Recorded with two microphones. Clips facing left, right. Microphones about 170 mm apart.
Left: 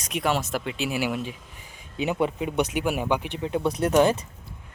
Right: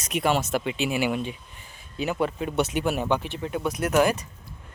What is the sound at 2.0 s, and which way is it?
Speech, 20° left (ahead or behind).